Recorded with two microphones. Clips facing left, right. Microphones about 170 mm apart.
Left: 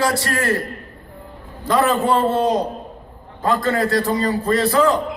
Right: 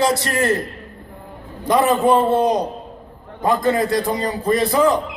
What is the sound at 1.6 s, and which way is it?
A man's voice, 15° right (ahead or behind).